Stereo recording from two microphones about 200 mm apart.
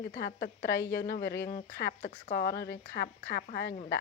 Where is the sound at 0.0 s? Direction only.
55° left (ahead or behind).